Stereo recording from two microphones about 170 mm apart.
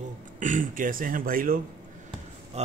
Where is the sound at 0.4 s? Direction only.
50° right (ahead or behind).